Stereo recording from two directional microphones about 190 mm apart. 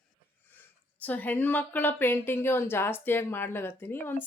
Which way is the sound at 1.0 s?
10° left (ahead or behind).